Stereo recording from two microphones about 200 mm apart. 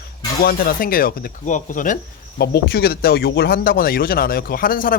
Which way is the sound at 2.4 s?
55° left (ahead or behind).